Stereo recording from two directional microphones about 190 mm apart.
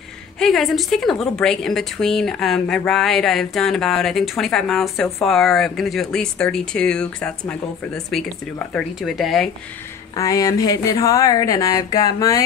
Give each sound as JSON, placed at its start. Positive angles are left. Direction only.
{"t": 0.4, "sound": "a woman's voice", "side_deg": 0}
{"t": 10.1, "sound": "speech", "side_deg": 20}